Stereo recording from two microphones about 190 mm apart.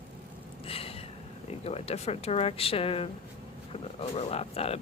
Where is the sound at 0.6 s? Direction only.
30° left (ahead or behind).